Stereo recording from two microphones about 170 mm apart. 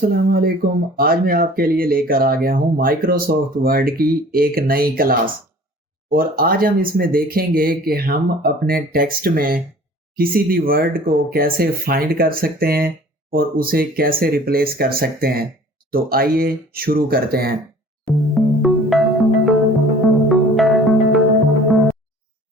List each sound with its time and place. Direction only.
0.0 s speech: 60° right (ahead or behind)
18.0 s music: centre (ahead or behind)